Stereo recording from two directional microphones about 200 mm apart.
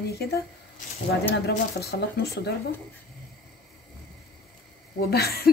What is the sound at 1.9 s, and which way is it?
Speech, 55° left (ahead or behind).